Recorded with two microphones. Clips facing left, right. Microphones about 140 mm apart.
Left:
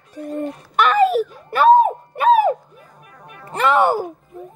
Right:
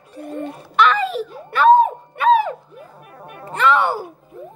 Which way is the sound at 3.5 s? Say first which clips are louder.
Left 2 dB; 40° left (ahead or behind).